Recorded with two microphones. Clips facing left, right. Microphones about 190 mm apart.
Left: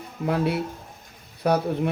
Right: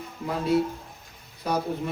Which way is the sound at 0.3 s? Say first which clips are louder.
Even; 65° left (ahead or behind).